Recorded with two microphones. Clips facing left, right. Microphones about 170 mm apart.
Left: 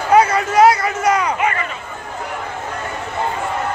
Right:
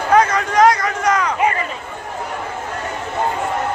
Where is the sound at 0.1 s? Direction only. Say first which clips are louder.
Left 2 dB; 10° left (ahead or behind).